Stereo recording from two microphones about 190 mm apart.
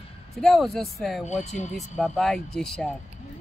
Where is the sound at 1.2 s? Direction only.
35° left (ahead or behind).